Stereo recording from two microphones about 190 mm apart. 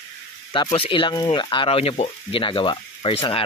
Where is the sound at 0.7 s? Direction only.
30° left (ahead or behind).